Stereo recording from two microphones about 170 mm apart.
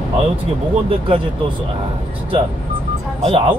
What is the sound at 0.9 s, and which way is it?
Speech, 30° right (ahead or behind).